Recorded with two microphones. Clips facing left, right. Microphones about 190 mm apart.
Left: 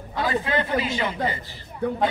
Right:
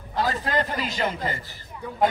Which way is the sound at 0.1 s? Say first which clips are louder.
Left 1 dB; 40° right (ahead or behind).